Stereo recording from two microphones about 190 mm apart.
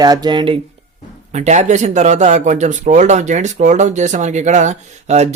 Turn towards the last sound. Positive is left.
turn(degrees=-35)  # may be behind; listen again after turning